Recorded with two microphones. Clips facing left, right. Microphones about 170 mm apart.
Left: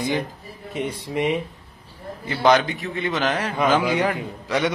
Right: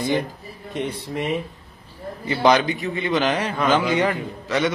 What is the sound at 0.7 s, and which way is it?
Speech, 10° left (ahead or behind).